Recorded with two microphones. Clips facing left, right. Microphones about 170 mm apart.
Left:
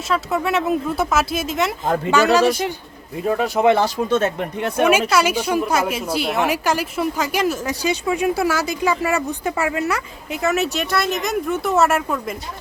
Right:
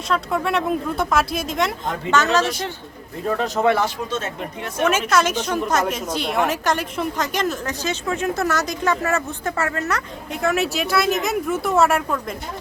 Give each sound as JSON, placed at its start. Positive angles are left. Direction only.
{"t": 0.1, "sound": "a woman's voice", "side_deg": 5}
{"t": 4.1, "sound": "speech", "side_deg": 60}
{"t": 4.8, "sound": "a woman's voice", "side_deg": 10}